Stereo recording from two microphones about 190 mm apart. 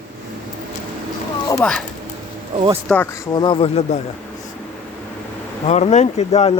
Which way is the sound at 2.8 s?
10° left (ahead or behind).